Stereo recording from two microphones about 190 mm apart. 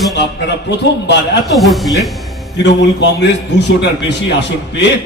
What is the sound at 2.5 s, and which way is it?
A man's voice, 65° left (ahead or behind).